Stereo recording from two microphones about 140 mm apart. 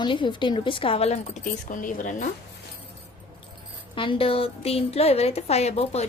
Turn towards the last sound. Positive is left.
turn(degrees=50)  # may be behind; listen again after turning